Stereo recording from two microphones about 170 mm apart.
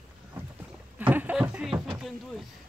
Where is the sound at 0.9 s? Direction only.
10° right (ahead or behind).